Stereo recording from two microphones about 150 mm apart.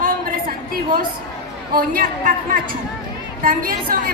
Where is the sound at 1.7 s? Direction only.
75° right (ahead or behind).